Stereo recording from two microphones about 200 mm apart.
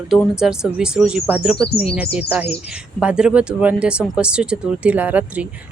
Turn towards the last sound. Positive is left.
turn(degrees=-5)  # may be behind; listen again after turning